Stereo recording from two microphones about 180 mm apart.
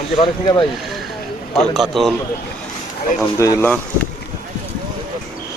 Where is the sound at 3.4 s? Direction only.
15° left (ahead or behind).